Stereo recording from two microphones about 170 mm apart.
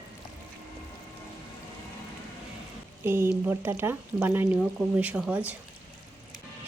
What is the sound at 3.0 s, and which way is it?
Speech, 15° right (ahead or behind).